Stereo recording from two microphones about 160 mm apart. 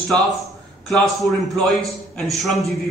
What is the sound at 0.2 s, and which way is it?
A man's voice, centre (ahead or behind).